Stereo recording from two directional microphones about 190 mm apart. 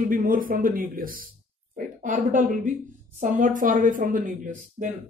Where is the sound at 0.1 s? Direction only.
45° right (ahead or behind).